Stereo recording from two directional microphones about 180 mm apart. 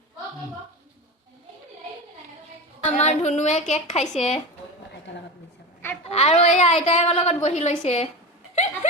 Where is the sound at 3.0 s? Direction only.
40° left (ahead or behind).